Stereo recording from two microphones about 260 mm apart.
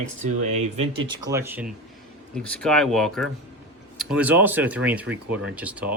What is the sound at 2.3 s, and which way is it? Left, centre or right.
Speech, centre.